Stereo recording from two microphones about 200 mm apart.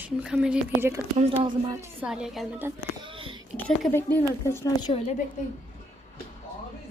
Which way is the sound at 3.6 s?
5° left (ahead or behind).